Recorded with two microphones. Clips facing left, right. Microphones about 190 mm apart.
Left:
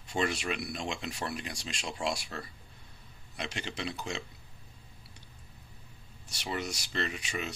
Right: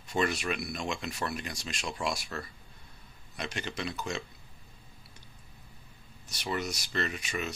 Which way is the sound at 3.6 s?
30° left (ahead or behind).